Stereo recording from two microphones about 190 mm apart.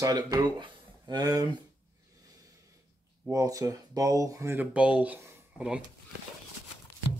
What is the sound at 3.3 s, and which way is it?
Speech, 20° right (ahead or behind).